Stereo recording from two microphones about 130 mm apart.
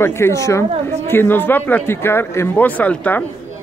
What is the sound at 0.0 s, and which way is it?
Speech, 20° left (ahead or behind).